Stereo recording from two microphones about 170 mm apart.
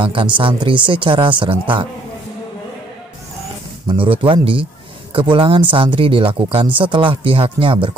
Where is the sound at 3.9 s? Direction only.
30° right (ahead or behind).